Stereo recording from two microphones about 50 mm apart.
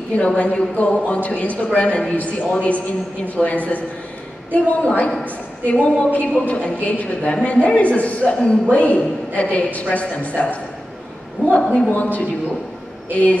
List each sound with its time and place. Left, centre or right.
0.2 s a man's voice: left
11.6 s speech: centre
11.9 s a man's voice: left